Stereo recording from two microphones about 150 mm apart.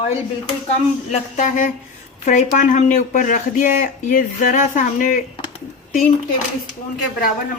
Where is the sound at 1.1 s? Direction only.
55° left (ahead or behind).